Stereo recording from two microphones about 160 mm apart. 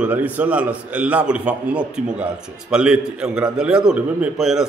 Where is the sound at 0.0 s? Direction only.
10° right (ahead or behind).